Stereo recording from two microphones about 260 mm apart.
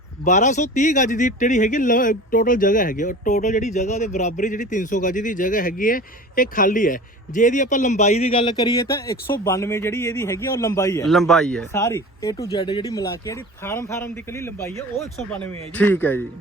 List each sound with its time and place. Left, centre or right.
0.3 s speech: left; by 16.2 s centre